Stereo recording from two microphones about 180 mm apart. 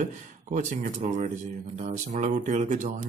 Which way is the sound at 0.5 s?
45° right (ahead or behind).